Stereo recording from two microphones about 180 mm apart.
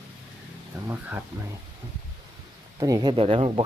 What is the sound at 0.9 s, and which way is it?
Speech, 10° right (ahead or behind).